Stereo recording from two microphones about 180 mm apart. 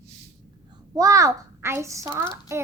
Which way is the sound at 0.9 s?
15° right (ahead or behind).